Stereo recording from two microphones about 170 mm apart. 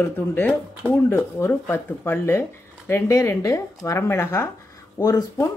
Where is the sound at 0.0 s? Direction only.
10° left (ahead or behind).